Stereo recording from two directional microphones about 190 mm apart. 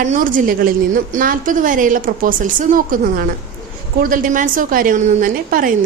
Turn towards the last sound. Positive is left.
turn(degrees=-45)  # may be behind; listen again after turning